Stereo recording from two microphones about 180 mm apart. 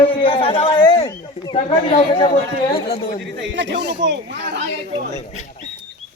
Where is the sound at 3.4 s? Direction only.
90° right.